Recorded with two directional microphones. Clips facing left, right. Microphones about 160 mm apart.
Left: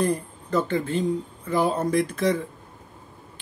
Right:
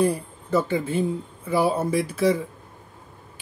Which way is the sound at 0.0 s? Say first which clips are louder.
Right 2 dB; 5° right (ahead or behind).